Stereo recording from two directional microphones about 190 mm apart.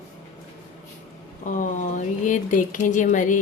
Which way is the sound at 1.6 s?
40° left (ahead or behind).